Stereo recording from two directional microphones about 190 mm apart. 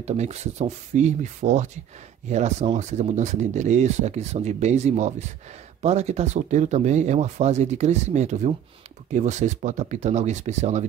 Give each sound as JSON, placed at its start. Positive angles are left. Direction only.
{"t": 0.0, "sound": "speech", "side_deg": -35}